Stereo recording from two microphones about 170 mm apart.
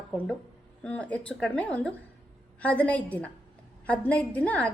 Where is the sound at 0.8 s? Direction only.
5° left (ahead or behind).